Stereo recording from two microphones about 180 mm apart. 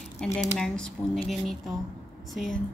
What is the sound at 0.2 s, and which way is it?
Speech, 5° left (ahead or behind).